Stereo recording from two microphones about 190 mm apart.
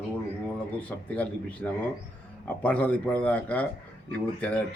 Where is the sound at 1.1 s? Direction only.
5° left (ahead or behind).